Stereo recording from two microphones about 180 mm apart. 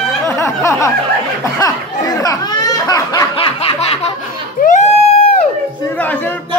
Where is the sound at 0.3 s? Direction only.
15° left (ahead or behind).